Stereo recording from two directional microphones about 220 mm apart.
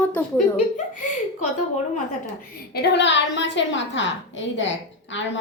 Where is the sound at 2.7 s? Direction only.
50° left (ahead or behind).